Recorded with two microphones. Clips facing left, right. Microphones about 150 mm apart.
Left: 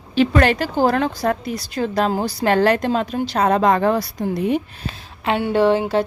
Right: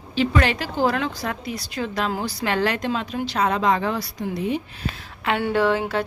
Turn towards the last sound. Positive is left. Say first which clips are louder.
# left 5 dB
turn(degrees=25)  # may be behind; listen again after turning